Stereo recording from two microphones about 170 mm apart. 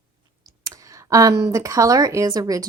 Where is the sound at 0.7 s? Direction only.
20° right (ahead or behind).